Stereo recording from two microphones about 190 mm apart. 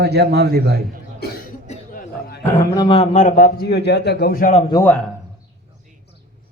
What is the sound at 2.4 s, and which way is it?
A man's voice, 15° left (ahead or behind).